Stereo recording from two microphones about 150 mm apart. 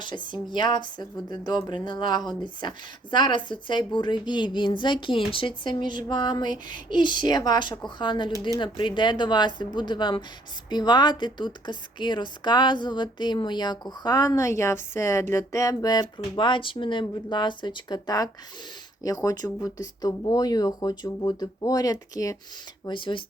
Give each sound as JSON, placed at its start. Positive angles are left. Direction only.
{"t": 0.0, "sound": "a woman's voice", "side_deg": 30}
{"t": 22.9, "sound": "speech", "side_deg": 35}